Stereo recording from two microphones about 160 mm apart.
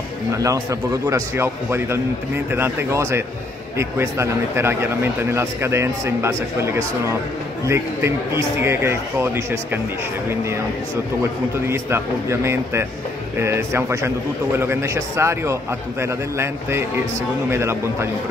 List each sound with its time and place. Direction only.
0.4 s a man's voice: 20° right (ahead or behind)
11.6 s a man's voice: 15° right (ahead or behind)